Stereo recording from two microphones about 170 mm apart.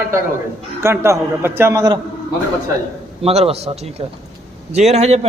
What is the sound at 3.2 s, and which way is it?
Speech, 35° right (ahead or behind).